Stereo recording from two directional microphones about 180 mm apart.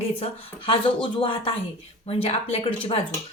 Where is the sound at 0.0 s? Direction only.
30° left (ahead or behind).